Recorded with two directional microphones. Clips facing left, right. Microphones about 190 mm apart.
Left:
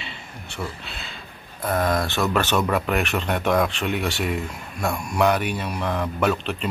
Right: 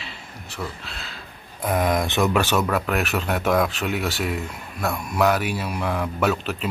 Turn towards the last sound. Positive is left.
turn(degrees=-5)  # may be behind; listen again after turning